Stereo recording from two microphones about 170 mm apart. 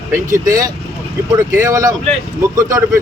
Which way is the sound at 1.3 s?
15° right (ahead or behind).